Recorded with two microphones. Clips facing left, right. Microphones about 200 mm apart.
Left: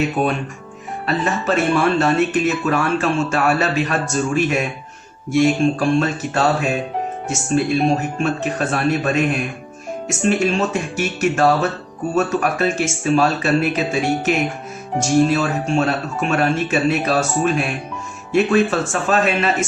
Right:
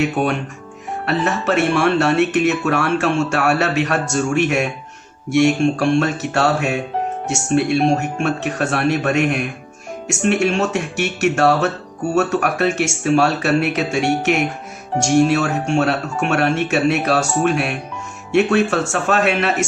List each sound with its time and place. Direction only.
1.0 s speech: 70° right (ahead or behind)